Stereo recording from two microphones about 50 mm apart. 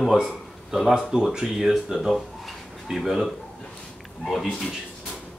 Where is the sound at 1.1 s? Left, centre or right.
Centre.